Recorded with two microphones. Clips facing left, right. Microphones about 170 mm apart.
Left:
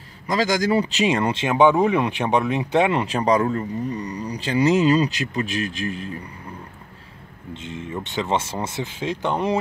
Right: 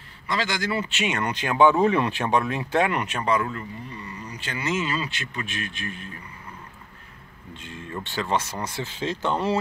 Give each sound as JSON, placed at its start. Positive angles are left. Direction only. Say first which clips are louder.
{"t": 0.3, "sound": "speech", "louder": "left 7 dB", "side_deg": 40}
{"t": 7.5, "sound": "speech", "louder": "left 5 dB", "side_deg": 20}
{"t": 8.8, "sound": "speech", "louder": "right 1 dB", "side_deg": 15}